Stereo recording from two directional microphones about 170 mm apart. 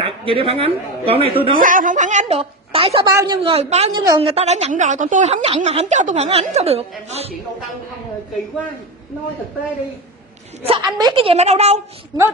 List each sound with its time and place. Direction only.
0.0 s a woman's voice: 30° right (ahead or behind)
1.5 s a woman's voice: 55° right (ahead or behind); by 3.1 s 30° right (ahead or behind)
3.1 s a woman's voice: 20° right (ahead or behind)
3.4 s a woman's voice: 35° right (ahead or behind)
3.9 s a woman's voice: 20° right (ahead or behind)
4.2 s a woman's voice: 35° right (ahead or behind)
10.6 s a woman's voice: 35° right (ahead or behind)
11.0 s a woman's voice: 25° right (ahead or behind)
11.3 s a woman's voice: 40° right (ahead or behind)